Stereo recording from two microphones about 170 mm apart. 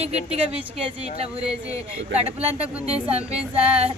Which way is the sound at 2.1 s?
35° right (ahead or behind).